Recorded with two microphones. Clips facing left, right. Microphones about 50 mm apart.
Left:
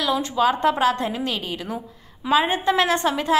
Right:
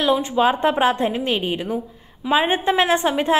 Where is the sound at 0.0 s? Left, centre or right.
Right.